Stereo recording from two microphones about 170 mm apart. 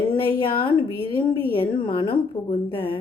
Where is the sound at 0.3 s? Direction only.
30° left (ahead or behind).